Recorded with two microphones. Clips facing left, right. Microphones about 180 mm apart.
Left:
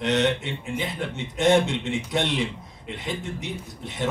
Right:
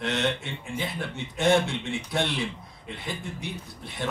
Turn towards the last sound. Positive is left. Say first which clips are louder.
# left 4 dB
turn(degrees=20)  # may be behind; listen again after turning